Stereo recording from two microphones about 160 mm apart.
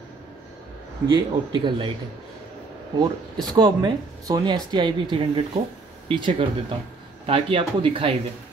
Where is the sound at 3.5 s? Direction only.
30° right (ahead or behind).